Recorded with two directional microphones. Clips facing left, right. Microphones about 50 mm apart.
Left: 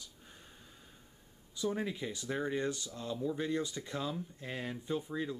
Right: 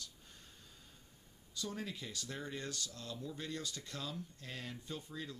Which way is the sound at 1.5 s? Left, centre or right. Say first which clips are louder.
Left 8 dB; centre.